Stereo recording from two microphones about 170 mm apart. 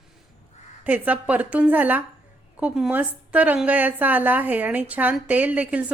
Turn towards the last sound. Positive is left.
turn(degrees=-10)  # may be behind; listen again after turning